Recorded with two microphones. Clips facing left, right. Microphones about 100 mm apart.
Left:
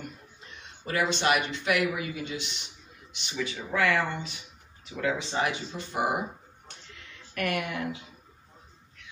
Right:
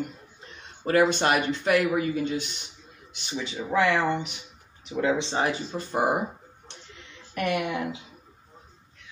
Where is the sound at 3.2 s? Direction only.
25° right (ahead or behind).